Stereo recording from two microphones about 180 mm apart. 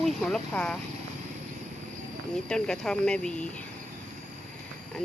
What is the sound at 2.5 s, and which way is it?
Speech, 5° left (ahead or behind).